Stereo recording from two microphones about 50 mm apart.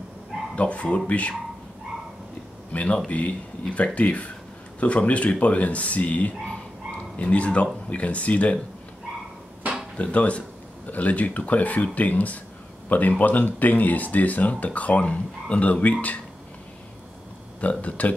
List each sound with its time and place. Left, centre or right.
0.6 s speech: left
2.7 s speech: left
9.9 s speech: left
17.6 s speech: left